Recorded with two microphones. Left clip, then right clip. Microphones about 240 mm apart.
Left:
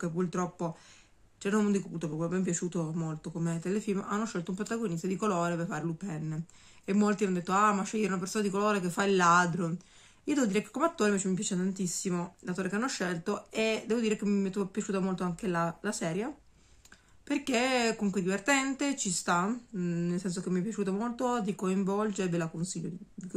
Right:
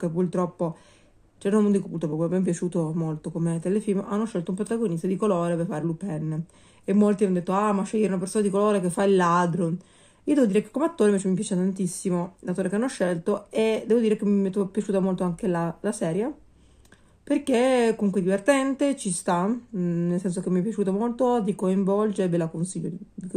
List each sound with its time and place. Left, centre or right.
0.0 s speech: centre
11.7 s speech: left
12.0 s speech: centre
17.3 s speech: centre